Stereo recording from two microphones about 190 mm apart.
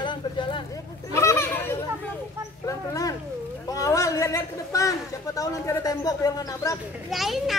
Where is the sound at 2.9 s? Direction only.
20° left (ahead or behind).